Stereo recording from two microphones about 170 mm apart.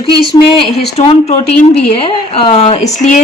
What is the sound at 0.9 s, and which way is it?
A woman's voice, 40° left (ahead or behind).